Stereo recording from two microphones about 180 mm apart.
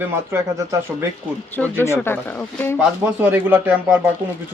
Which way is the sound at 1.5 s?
10° left (ahead or behind).